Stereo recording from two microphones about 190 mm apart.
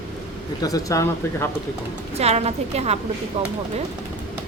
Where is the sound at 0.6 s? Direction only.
20° left (ahead or behind).